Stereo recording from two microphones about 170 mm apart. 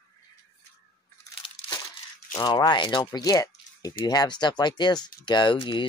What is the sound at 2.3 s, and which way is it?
Speech, 25° left (ahead or behind).